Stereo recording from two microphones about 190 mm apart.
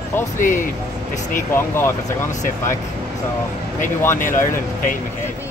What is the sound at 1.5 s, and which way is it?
Speech, 10° left (ahead or behind).